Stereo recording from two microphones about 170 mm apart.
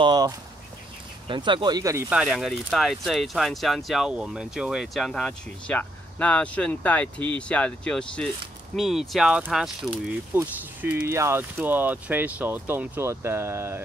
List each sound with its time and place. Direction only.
0.0 s speech: 25° right (ahead or behind)
1.3 s speech: 30° right (ahead or behind)
2.0 s speech: 5° right (ahead or behind)